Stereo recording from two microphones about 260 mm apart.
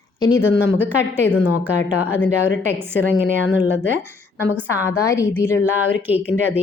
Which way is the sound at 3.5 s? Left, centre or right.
Centre.